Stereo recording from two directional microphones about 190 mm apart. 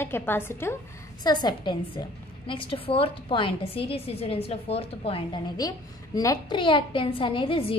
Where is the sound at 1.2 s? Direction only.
25° left (ahead or behind).